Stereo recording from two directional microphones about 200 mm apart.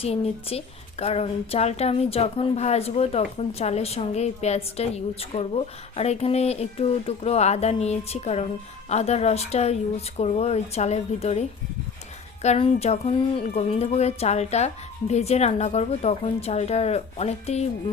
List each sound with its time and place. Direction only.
0.0 s a woman's voice: 30° left (ahead or behind)